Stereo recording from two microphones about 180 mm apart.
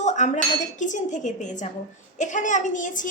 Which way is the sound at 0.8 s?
45° left (ahead or behind).